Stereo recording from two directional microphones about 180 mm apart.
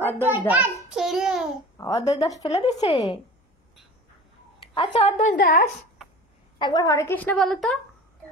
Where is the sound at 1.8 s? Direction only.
20° left (ahead or behind).